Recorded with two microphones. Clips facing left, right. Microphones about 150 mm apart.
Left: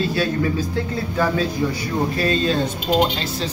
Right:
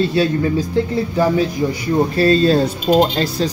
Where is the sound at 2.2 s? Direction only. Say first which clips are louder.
Right 8 dB; 35° right (ahead or behind).